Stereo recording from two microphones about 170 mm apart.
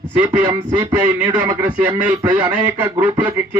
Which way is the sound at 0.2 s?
15° right (ahead or behind).